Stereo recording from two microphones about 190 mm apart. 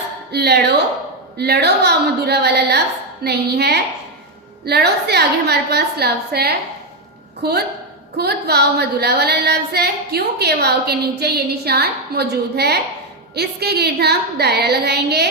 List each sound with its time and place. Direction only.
0.3 s speech: 60° right (ahead or behind)